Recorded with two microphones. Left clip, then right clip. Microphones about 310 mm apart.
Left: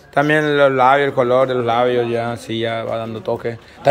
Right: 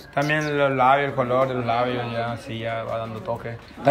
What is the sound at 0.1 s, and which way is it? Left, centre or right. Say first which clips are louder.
A man's voice: left 8 dB; centre.